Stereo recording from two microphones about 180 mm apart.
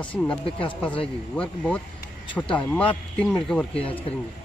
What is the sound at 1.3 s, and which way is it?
Speech, 5° left (ahead or behind).